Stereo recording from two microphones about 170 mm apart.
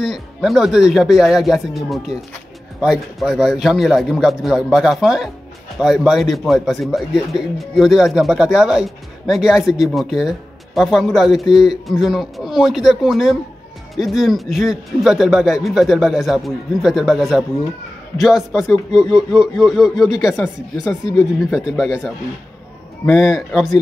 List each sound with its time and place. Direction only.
0.0 s speech: centre (ahead or behind)
21.5 s speech: 5° right (ahead or behind)
23.0 s speech: centre (ahead or behind)